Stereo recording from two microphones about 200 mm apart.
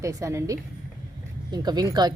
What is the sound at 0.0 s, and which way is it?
A woman's voice, 15° right (ahead or behind).